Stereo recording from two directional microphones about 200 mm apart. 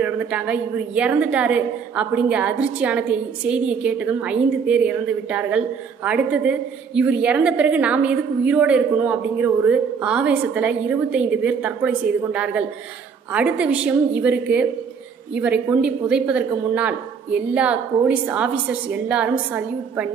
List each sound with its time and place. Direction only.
0.0 s a woman's voice: 5° right (ahead or behind)